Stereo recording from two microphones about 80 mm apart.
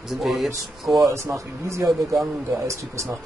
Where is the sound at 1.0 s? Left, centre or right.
Right.